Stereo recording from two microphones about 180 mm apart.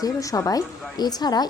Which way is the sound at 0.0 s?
20° left (ahead or behind).